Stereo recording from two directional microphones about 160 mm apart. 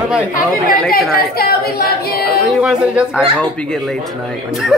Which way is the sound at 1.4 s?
75° left (ahead or behind).